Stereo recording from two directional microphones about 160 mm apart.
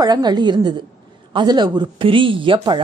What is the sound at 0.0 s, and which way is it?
Speech, 25° right (ahead or behind).